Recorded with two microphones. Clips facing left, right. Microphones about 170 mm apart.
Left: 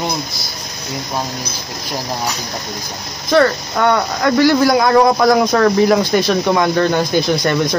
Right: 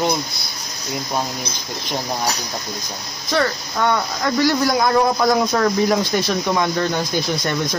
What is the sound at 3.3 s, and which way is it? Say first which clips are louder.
Speech: left 7 dB; 65° left (ahead or behind).